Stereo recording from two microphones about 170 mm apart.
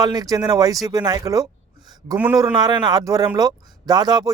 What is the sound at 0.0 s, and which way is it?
Speech, 20° right (ahead or behind).